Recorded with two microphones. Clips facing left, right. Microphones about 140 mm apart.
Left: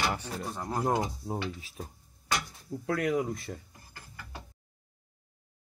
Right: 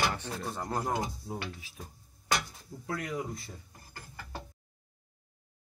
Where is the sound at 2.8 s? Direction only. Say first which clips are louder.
Left 7 dB; 65° left (ahead or behind).